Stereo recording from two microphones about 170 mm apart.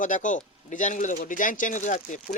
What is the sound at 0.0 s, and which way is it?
Speech, 50° left (ahead or behind).